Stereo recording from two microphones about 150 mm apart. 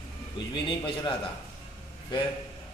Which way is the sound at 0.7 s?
30° left (ahead or behind).